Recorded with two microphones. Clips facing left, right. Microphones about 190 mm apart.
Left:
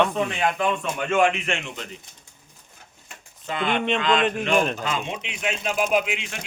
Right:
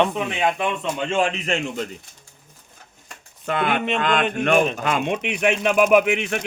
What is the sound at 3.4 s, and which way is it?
Speech, 60° right (ahead or behind).